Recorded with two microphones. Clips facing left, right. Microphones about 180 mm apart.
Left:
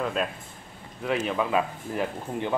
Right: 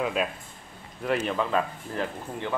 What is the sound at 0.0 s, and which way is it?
Speech, 5° right (ahead or behind).